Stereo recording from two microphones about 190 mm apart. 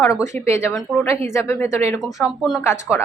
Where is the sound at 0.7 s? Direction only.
Centre (ahead or behind).